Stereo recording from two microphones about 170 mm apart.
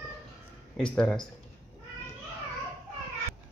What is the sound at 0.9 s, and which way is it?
Speech, 5° left (ahead or behind).